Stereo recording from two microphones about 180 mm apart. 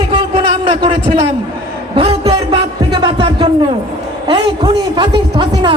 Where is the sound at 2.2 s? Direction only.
30° right (ahead or behind).